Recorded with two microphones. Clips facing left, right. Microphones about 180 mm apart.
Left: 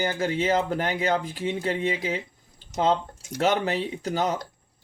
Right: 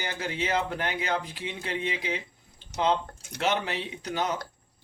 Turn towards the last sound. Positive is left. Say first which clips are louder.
# left 4 dB
turn(degrees=40)  # may be behind; listen again after turning